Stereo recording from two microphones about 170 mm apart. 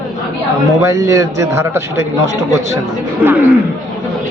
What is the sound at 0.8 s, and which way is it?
A woman's voice, 20° right (ahead or behind).